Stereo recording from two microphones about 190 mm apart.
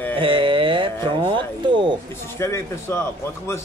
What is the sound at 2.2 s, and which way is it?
A man's voice, 15° left (ahead or behind).